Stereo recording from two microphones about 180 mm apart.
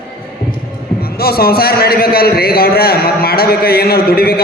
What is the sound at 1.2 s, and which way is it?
A man's voice, 60° left (ahead or behind).